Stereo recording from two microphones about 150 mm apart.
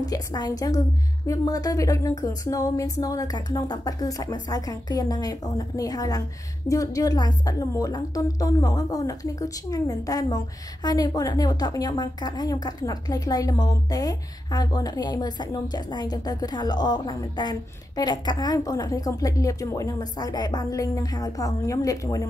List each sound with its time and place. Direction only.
0.0 s a woman's voice: 25° left (ahead or behind)